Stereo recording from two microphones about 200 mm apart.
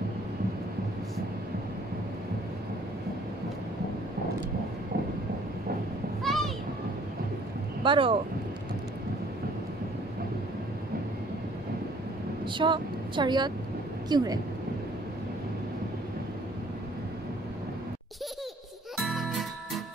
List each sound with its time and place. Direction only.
6.2 s a sound: centre (ahead or behind)
7.8 s speech: 25° right (ahead or behind)
12.4 s speech: 25° right (ahead or behind)
18.9 s music: centre (ahead or behind)